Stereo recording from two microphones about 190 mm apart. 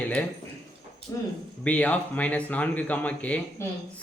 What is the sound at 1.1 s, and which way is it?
Speech, 20° left (ahead or behind).